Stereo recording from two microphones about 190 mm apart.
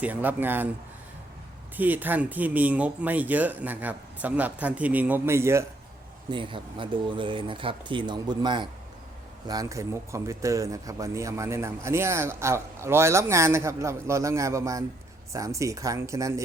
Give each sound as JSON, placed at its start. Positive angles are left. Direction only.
{"t": 0.0, "sound": "speech", "side_deg": -10}
{"t": 1.7, "sound": "speech", "side_deg": -10}
{"t": 6.3, "sound": "speech", "side_deg": -25}